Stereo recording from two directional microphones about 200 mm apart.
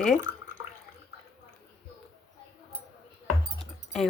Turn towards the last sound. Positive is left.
turn(degrees=0)  # may be behind; listen again after turning